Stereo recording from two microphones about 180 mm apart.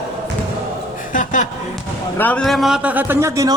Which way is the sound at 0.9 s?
45° left (ahead or behind).